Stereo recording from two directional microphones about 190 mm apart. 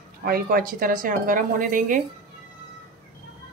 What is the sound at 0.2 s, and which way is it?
Speech, 50° right (ahead or behind).